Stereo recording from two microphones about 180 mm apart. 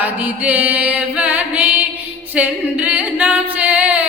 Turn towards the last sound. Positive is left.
turn(degrees=-10)  # may be behind; listen again after turning